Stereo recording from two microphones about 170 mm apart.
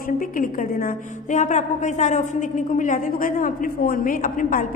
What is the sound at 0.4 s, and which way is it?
A woman's voice, 50° left (ahead or behind).